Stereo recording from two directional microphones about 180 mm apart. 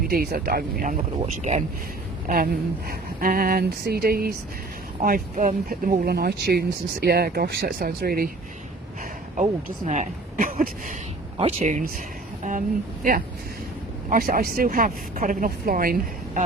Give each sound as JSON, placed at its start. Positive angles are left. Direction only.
{"t": 0.1, "sound": "speech", "side_deg": -60}
{"t": 1.4, "sound": "speech", "side_deg": -40}
{"t": 2.2, "sound": "speech", "side_deg": -55}
{"t": 9.3, "sound": "speech", "side_deg": -40}